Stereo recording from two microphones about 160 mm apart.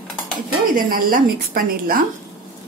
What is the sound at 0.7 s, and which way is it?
A woman's voice, 60° right (ahead or behind).